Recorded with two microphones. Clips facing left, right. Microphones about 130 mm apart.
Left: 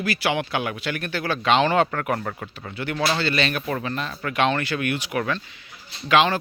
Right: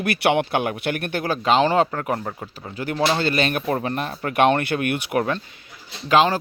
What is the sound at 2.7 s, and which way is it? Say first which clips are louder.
Speech: right 3 dB; 35° right (ahead or behind).